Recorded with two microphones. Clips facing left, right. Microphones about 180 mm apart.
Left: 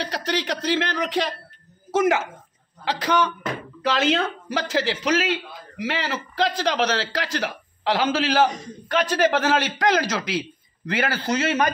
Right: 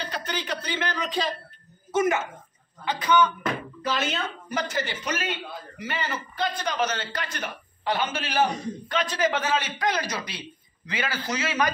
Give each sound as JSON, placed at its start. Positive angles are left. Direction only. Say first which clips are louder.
{"t": 0.0, "sound": "a man's voice", "louder": "left 6 dB", "side_deg": 75}
{"t": 8.9, "sound": "a man's voice", "louder": "left 6 dB", "side_deg": 65}
{"t": 10.9, "sound": "speech", "louder": "left 6 dB", "side_deg": 60}